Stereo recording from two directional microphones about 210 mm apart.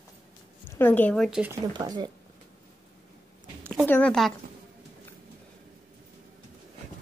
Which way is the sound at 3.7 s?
5° left (ahead or behind).